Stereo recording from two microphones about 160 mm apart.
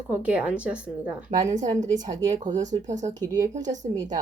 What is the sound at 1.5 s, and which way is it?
Speech, 50° right (ahead or behind).